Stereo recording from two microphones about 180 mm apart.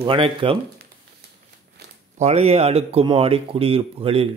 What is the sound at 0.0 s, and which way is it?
Speech, 30° right (ahead or behind).